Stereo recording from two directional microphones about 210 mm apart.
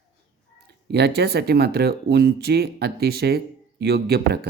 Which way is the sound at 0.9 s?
50° right (ahead or behind).